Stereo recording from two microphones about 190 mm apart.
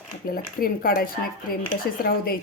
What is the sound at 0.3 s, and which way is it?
Speech, 50° left (ahead or behind).